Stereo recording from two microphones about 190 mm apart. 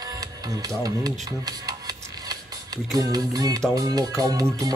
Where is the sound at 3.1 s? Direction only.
20° right (ahead or behind).